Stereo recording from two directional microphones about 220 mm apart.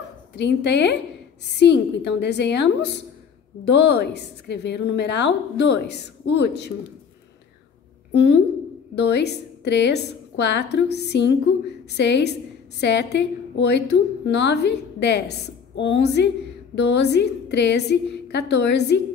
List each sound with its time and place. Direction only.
0.4 s a woman's voice: 50° left (ahead or behind)
8.1 s a woman's voice: 50° left (ahead or behind)